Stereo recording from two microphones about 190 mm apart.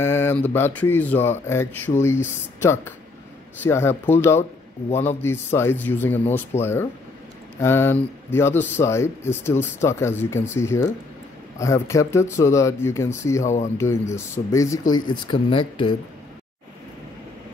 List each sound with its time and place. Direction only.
0.0 s speech: 10° left (ahead or behind)